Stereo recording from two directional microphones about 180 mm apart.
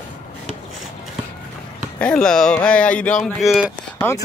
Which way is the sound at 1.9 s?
5° left (ahead or behind).